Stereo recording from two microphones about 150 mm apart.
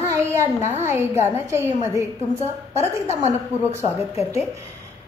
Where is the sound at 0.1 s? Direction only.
20° right (ahead or behind).